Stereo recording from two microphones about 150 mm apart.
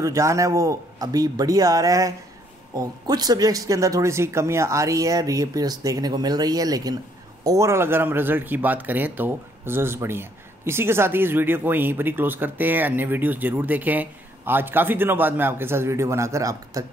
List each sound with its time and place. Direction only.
0.0 s speech: 20° right (ahead or behind)